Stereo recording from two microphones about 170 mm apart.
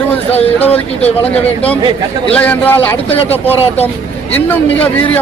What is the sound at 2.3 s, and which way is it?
A man's voice, 10° left (ahead or behind).